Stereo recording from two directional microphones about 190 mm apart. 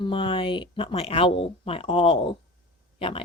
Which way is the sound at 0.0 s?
25° left (ahead or behind).